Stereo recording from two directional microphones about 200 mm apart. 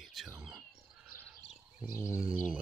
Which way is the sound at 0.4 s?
Centre (ahead or behind).